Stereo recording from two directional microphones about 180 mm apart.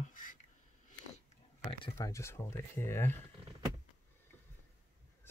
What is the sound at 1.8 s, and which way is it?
Speech, 15° left (ahead or behind).